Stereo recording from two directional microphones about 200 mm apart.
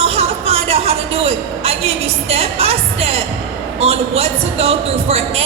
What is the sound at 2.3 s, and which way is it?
A woman's voice, 30° right (ahead or behind).